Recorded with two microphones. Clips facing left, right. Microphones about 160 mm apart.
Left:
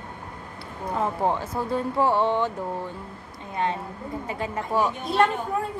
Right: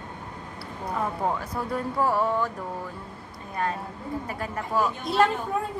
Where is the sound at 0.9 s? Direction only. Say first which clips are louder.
Left 3 dB; 30° left (ahead or behind).